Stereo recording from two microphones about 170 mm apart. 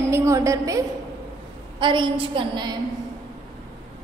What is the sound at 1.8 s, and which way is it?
Speech, 30° right (ahead or behind).